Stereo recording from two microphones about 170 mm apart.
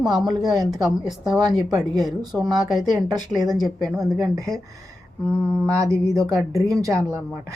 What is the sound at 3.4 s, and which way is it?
Speech, 25° right (ahead or behind).